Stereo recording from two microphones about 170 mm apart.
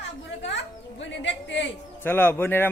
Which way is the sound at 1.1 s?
90° left.